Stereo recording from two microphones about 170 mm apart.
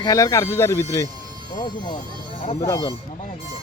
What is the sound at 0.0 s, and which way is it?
Speech, 20° left (ahead or behind).